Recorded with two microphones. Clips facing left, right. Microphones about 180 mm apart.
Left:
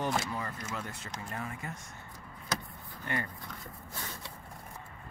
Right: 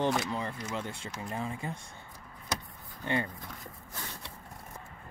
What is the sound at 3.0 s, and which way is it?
Speech, 20° right (ahead or behind).